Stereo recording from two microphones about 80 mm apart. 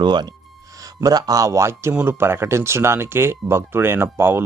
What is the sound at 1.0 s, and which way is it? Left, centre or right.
Speech, right.